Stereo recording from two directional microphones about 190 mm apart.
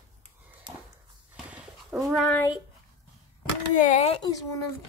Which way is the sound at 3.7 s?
40° left (ahead or behind).